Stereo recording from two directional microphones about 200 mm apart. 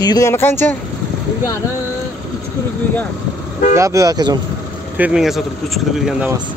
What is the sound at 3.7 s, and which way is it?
Speech, 15° right (ahead or behind).